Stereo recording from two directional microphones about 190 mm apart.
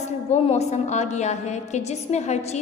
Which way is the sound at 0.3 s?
35° left (ahead or behind).